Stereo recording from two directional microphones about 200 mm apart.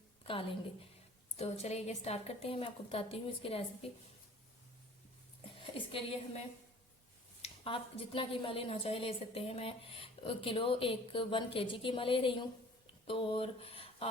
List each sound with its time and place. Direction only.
0.3 s a woman's voice: 30° left (ahead or behind)
5.7 s a woman's voice: 30° left (ahead or behind)
7.4 s a woman's voice: 30° left (ahead or behind)